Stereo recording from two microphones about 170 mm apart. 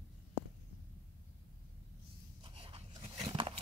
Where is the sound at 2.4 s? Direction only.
30° right (ahead or behind).